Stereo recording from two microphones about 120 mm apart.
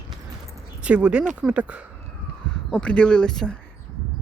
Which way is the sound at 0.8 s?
10° right (ahead or behind).